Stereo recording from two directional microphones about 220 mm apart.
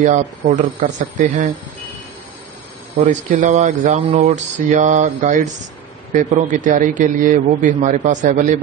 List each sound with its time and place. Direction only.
0.0 s speech: 35° right (ahead or behind)
3.0 s speech: 35° right (ahead or behind)